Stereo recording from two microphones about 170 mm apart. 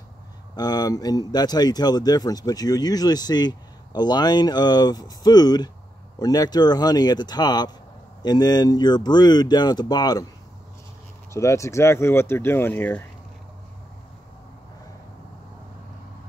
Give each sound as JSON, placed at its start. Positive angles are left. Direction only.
{"t": 0.6, "sound": "speech", "side_deg": 25}
{"t": 11.3, "sound": "speech", "side_deg": 15}